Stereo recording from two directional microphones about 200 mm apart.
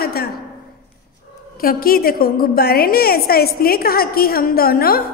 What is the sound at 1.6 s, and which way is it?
A woman's voice, 45° left (ahead or behind).